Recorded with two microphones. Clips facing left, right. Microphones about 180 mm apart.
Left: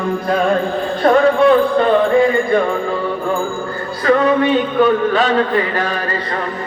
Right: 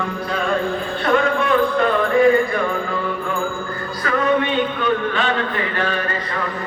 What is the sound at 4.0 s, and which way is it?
A man's voice, 40° left (ahead or behind).